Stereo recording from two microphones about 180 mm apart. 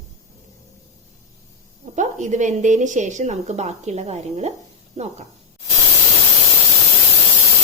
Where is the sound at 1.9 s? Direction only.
45° right (ahead or behind).